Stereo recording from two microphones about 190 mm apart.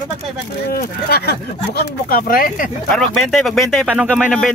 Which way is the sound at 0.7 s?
55° left (ahead or behind).